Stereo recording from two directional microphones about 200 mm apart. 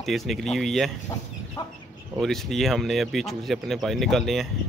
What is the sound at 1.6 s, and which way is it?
Speech, 20° left (ahead or behind).